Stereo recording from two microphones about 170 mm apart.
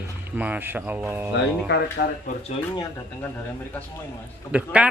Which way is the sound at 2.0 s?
70° left (ahead or behind).